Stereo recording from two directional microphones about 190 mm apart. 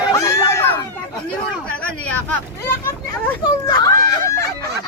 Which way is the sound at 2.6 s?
10° left (ahead or behind).